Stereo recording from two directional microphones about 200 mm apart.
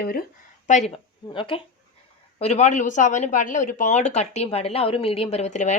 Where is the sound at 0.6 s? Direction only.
35° left (ahead or behind).